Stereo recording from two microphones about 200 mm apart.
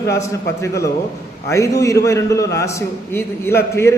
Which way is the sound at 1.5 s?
15° left (ahead or behind).